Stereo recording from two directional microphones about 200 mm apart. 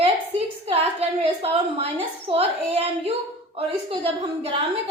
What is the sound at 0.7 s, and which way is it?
A woman's voice, 30° right (ahead or behind).